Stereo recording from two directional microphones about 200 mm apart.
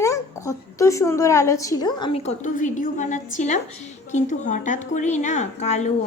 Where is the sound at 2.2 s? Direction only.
40° left (ahead or behind).